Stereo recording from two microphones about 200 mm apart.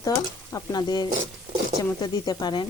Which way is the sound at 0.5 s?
20° left (ahead or behind).